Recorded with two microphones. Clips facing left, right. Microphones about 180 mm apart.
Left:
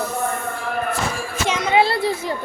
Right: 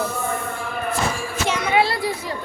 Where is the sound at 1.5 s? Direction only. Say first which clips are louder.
Left 2 dB; 25° left (ahead or behind).